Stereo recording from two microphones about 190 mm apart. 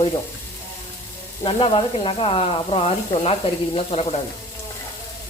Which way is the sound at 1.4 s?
25° left (ahead or behind).